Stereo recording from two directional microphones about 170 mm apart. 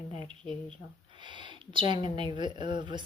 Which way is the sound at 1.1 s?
25° right (ahead or behind).